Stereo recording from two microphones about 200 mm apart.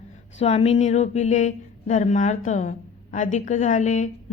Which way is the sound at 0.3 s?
30° left (ahead or behind).